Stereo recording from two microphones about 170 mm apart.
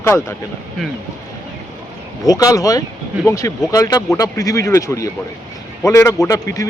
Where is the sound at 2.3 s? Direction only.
20° left (ahead or behind).